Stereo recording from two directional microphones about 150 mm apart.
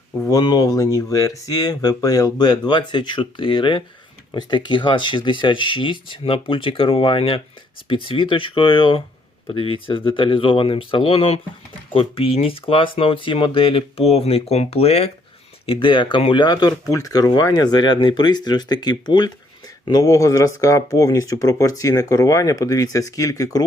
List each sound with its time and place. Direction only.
0.2 s speech: 25° left (ahead or behind)